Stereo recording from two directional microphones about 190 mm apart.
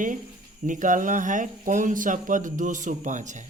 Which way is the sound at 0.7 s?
45° right (ahead or behind).